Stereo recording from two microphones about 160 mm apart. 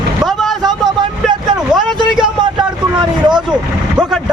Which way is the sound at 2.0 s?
5° right (ahead or behind).